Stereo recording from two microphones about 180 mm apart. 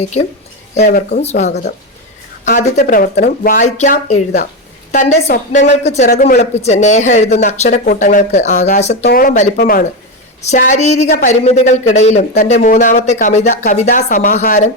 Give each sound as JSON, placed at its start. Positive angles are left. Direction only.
{"t": 0.8, "sound": "speech", "side_deg": 45}
{"t": 6.1, "sound": "speech", "side_deg": 55}
{"t": 9.0, "sound": "speech", "side_deg": 50}
{"t": 10.4, "sound": "speech", "side_deg": 40}